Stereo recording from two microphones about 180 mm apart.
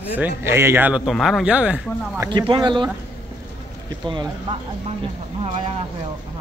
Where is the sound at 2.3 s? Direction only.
25° right (ahead or behind).